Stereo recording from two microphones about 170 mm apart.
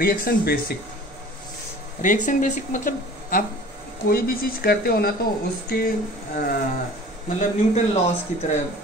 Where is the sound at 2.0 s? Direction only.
50° left (ahead or behind); by 5.1 s 65° left (ahead or behind).